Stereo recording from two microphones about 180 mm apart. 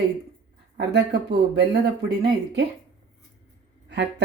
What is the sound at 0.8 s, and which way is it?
Speech, 65° right (ahead or behind).